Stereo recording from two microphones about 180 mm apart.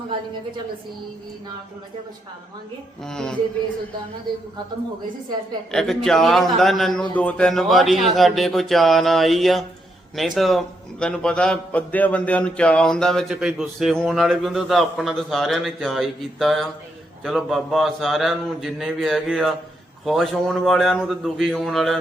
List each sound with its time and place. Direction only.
3.0 s a man's voice: 5° left (ahead or behind)
5.7 s a man's voice: centre (ahead or behind)